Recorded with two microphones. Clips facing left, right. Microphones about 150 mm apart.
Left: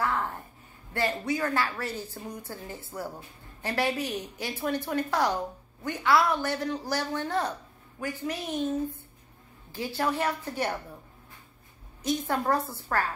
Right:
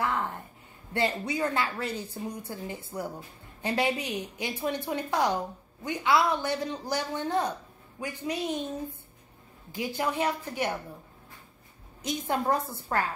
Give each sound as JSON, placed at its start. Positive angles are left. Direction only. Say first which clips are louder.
{"t": 0.9, "sound": "a woman's voice", "louder": "even", "side_deg": -20}
{"t": 9.7, "sound": "a woman's voice", "louder": "left 1 dB", "side_deg": -15}
{"t": 12.0, "sound": "a woman's voice", "louder": "left 1 dB", "side_deg": -20}